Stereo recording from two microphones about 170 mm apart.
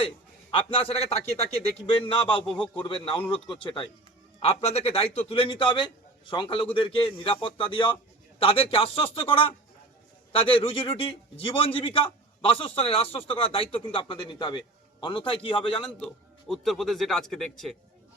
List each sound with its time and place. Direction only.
0.5 s a man's voice: 35° left (ahead or behind)
10.3 s a man's voice: 35° left (ahead or behind)
16.5 s speech: centre (ahead or behind)